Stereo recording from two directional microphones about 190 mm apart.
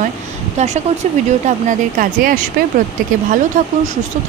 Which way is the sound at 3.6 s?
45° right (ahead or behind).